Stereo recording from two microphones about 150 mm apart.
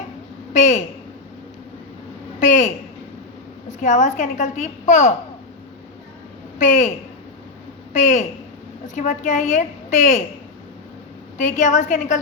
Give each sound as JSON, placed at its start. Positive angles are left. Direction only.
{"t": 0.5, "sound": "a woman's voice", "side_deg": 55}
{"t": 2.4, "sound": "a sound", "side_deg": 60}
{"t": 3.7, "sound": "a child's voice", "side_deg": 55}
{"t": 6.6, "sound": "a child's voice", "side_deg": 55}
{"t": 7.9, "sound": "a child's voice", "side_deg": 55}
{"t": 11.3, "sound": "a child's voice", "side_deg": 60}